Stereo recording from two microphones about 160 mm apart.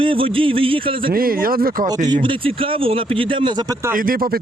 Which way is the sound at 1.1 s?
65° right (ahead or behind).